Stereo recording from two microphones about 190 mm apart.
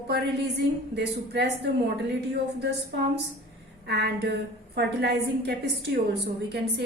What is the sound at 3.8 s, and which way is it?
A woman's voice, 60° right (ahead or behind).